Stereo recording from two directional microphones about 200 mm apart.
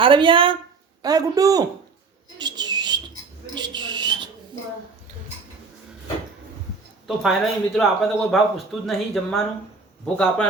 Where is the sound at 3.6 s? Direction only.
20° right (ahead or behind).